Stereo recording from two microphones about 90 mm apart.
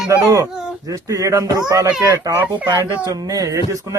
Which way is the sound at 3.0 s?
45° right (ahead or behind).